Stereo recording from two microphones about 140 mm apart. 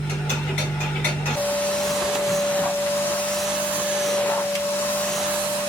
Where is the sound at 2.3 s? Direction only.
10° left (ahead or behind).